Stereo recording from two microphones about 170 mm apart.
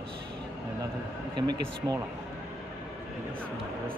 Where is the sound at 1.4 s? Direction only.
20° right (ahead or behind).